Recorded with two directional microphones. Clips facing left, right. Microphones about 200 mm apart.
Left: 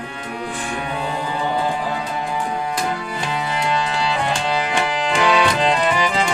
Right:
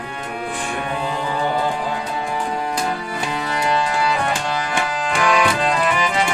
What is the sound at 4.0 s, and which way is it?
Music, 25° left (ahead or behind).